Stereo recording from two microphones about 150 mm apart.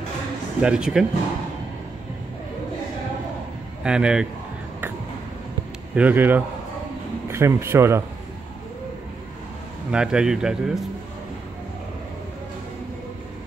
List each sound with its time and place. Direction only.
0.6 s a man's voice: 5° right (ahead or behind)
3.8 s a man's voice: 5° right (ahead or behind)
5.9 s a man's voice: 10° right (ahead or behind)
9.8 s a man's voice: 5° right (ahead or behind)